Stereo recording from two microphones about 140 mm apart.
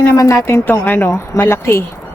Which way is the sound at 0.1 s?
20° left (ahead or behind).